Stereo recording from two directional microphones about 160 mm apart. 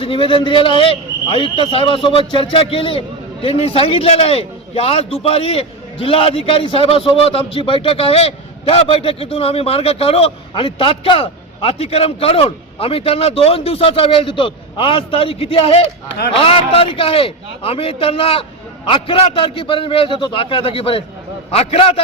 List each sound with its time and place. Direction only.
0.0 s a man's voice: 30° left (ahead or behind)